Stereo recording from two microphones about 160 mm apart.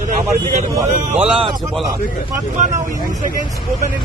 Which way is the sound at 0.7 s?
15° right (ahead or behind).